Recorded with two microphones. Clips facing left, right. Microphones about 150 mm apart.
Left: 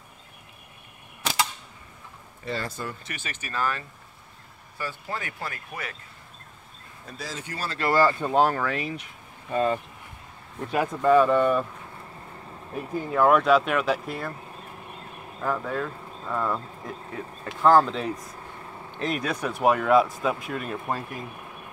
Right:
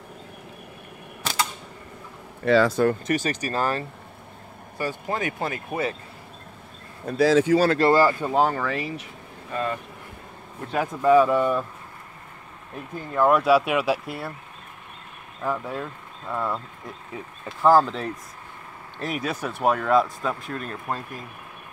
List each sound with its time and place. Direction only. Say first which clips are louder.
2.4 s speech: right 14 dB; 85° right
3.1 s speech: right 12 dB; 40° right (ahead or behind)
5.0 s speech: right 7 dB; 20° right (ahead or behind)
7.1 s speech: right 19 dB; 70° right (ahead or behind); by 7.7 s 90° right
7.9 s speech: right 3 dB; 10° right (ahead or behind)
8.3 s speech: even; centre (ahead or behind)
9.5 s speech: left 4 dB; 25° left (ahead or behind)
10.7 s speech: right 2 dB; centre (ahead or behind)
12.7 s speech: left 1 dB; 5° left (ahead or behind)
15.4 s speech: even; 5° right (ahead or behind)
17.6 s speech: right 1 dB; 5° right (ahead or behind)